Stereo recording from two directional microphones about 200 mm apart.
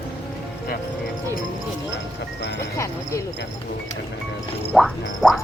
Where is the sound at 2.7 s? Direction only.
15° left (ahead or behind).